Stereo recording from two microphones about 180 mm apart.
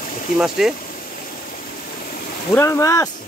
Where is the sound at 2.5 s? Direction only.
15° left (ahead or behind).